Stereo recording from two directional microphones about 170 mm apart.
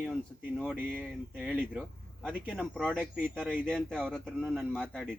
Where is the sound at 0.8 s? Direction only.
10° right (ahead or behind).